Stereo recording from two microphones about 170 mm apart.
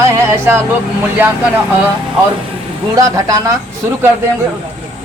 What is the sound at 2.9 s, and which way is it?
Speech, 20° right (ahead or behind).